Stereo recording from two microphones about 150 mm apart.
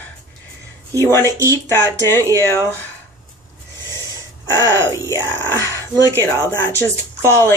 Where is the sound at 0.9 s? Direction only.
20° right (ahead or behind).